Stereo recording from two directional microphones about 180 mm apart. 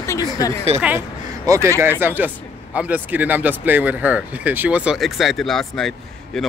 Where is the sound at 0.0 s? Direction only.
20° left (ahead or behind).